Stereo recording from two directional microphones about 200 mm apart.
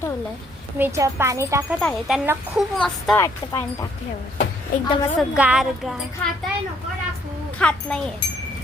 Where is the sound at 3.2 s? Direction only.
15° left (ahead or behind).